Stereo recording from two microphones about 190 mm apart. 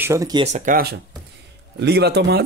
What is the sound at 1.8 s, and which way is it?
Speech, 60° right (ahead or behind).